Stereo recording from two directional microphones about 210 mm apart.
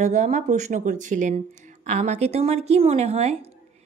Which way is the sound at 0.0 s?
35° right (ahead or behind).